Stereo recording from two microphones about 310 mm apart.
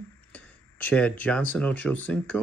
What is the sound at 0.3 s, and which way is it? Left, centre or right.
Speech, centre.